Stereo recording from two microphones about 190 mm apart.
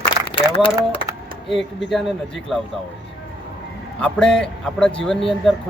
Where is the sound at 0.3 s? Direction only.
25° left (ahead or behind).